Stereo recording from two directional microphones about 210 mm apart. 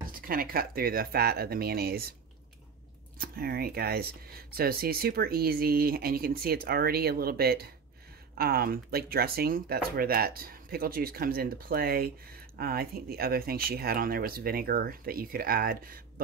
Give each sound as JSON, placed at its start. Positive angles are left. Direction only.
{"t": 0.3, "sound": "speech", "side_deg": -45}
{"t": 3.2, "sound": "speech", "side_deg": -45}